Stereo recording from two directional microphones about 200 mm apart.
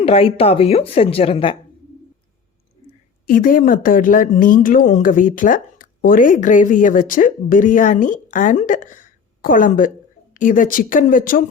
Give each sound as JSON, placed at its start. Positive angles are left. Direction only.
{"t": 0.0, "sound": "a woman's voice", "side_deg": 30}
{"t": 3.2, "sound": "speech", "side_deg": 45}